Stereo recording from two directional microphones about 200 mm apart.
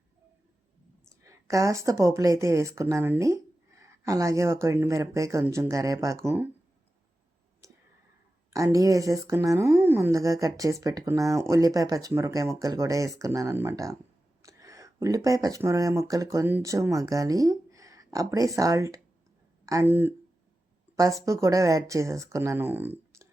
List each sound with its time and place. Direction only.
1.2 s speech: 15° right (ahead or behind)
8.5 s speech: 15° right (ahead or behind)